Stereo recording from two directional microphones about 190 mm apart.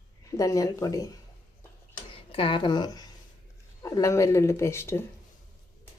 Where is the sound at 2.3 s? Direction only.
30° left (ahead or behind).